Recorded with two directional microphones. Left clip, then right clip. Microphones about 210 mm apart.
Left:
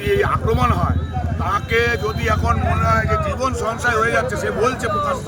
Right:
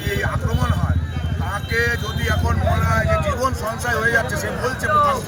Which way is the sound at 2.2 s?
30° left (ahead or behind).